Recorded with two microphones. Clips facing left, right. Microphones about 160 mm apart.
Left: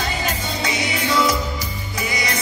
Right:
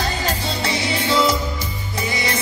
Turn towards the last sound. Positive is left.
turn(degrees=-30)  # may be behind; listen again after turning